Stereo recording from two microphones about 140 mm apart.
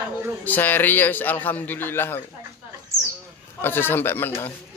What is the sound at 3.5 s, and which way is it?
Speech, 15° left (ahead or behind).